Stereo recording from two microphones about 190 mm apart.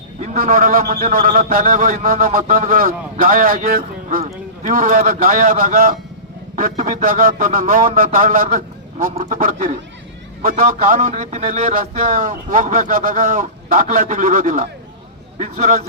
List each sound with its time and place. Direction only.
0.2 s a man's voice: 50° right (ahead or behind)